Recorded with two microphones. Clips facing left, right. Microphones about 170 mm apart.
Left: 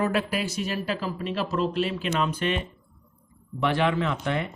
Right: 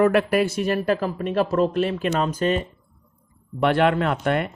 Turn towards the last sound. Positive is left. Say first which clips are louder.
# right 5 dB
turn(degrees=-55)  # may be behind; listen again after turning